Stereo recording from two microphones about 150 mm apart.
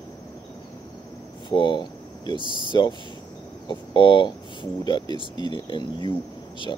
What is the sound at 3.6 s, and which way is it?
Speech, 30° left (ahead or behind).